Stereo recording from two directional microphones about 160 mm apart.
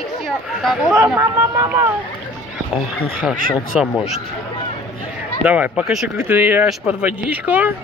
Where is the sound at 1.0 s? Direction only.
15° right (ahead or behind).